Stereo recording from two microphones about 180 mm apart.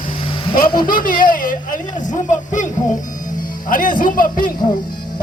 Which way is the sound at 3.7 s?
50° left (ahead or behind).